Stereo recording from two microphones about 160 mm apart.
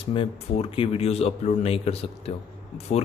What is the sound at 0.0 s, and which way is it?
A man's voice, 35° left (ahead or behind).